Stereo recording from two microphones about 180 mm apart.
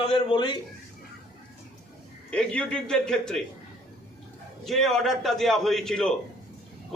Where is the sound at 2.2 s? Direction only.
5° left (ahead or behind).